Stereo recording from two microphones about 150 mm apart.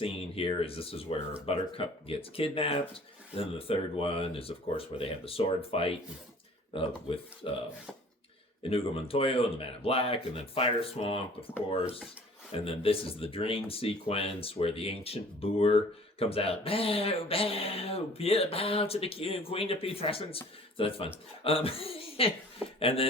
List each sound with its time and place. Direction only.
0.0 s speech: 40° left (ahead or behind)
8.6 s speech: 40° left (ahead or behind)